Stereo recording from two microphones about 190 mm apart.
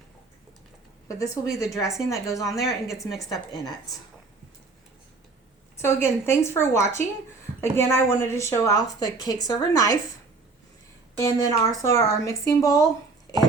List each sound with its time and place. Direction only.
1.0 s a woman's voice: 15° left (ahead or behind)
5.8 s a woman's voice: 15° left (ahead or behind)
11.2 s a woman's voice: 20° left (ahead or behind)